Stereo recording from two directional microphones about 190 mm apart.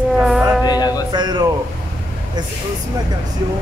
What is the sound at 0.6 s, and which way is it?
Music, 20° left (ahead or behind).